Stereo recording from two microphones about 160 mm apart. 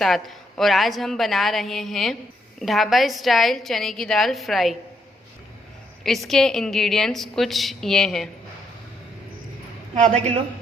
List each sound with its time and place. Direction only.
0.0 s a woman's voice: centre (ahead or behind)
6.0 s a woman's voice: centre (ahead or behind)
9.9 s a woman's voice: 45° right (ahead or behind)